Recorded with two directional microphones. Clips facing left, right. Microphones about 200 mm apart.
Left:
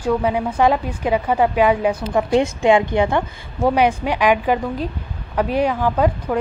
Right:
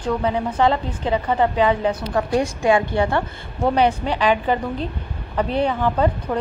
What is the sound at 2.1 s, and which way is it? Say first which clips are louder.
A woman's voice: left 5 dB; 20° left (ahead or behind).